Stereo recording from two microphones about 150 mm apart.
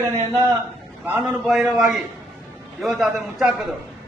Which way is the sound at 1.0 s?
5° right (ahead or behind).